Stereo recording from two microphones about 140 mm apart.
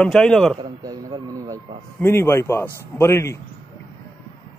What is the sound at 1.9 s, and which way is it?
A man's voice, 15° left (ahead or behind).